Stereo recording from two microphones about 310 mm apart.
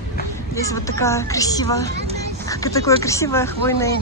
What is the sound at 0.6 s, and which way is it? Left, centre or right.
Speech, centre.